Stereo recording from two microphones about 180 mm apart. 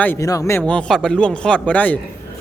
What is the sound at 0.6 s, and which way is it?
Speech, 5° left (ahead or behind).